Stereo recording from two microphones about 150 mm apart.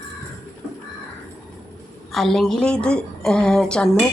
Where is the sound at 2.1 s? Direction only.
Centre (ahead or behind).